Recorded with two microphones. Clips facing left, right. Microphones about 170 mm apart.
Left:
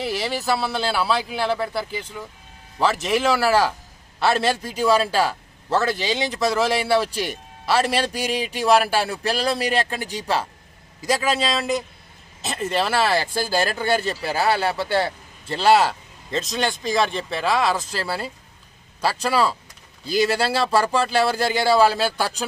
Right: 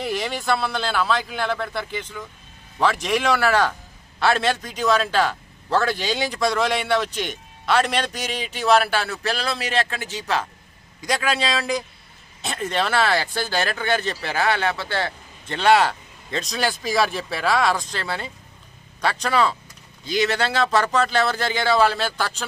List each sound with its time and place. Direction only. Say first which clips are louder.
0.0 s speech: left 1 dB; 5° left (ahead or behind)
11.0 s speech: left 2 dB; 5° left (ahead or behind)
15.0 s a sound: left 4 dB; 35° left (ahead or behind)
15.6 s speech: even; 5° left (ahead or behind)